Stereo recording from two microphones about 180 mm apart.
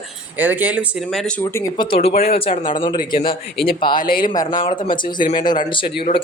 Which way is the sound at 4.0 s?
55° left (ahead or behind).